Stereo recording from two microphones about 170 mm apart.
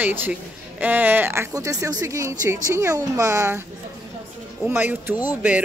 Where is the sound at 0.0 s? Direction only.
10° right (ahead or behind).